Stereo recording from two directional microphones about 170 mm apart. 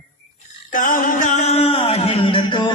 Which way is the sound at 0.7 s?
50° left (ahead or behind).